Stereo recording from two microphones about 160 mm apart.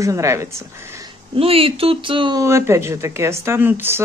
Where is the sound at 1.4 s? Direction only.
35° right (ahead or behind).